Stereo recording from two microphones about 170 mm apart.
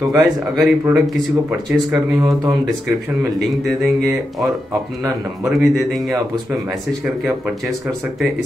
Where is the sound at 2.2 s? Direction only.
20° right (ahead or behind).